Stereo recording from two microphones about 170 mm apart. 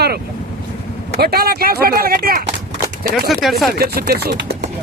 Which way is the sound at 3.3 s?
Centre (ahead or behind).